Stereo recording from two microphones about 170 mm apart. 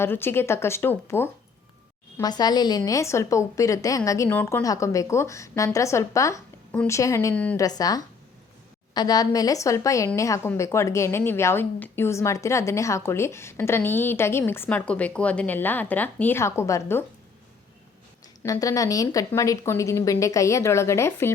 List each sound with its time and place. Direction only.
0.0 s a woman's voice: 15° left (ahead or behind)
2.1 s a woman's voice: 25° left (ahead or behind)
18.4 s a woman's voice: 20° left (ahead or behind)